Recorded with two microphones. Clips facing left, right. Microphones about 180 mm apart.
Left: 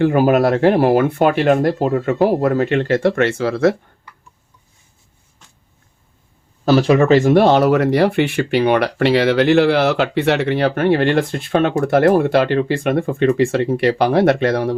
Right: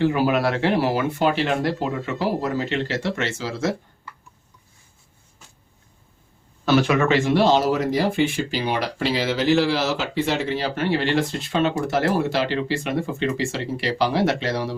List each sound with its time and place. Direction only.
0.0 s speech: 50° left (ahead or behind)
6.7 s speech: 35° left (ahead or behind); by 14.8 s 55° left (ahead or behind)